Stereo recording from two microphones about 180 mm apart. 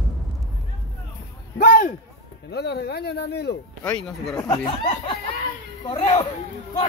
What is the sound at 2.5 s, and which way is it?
Speech, 65° left (ahead or behind).